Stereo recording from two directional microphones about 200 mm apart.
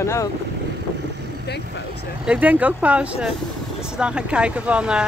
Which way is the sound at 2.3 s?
5° right (ahead or behind).